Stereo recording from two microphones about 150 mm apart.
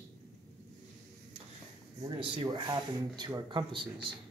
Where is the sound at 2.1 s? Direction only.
30° right (ahead or behind).